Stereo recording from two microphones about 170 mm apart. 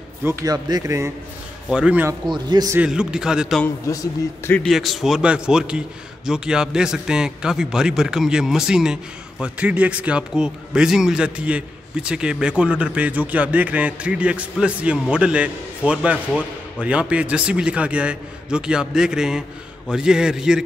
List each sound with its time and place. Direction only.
0.2 s speech: 20° right (ahead or behind)
1.7 s speech: 5° right (ahead or behind)
2.2 s a man's voice: 25° right (ahead or behind)
2.8 s a man's voice: 5° right (ahead or behind)
3.6 s a man's voice: 20° left (ahead or behind)
4.5 s a man's voice: 5° left (ahead or behind)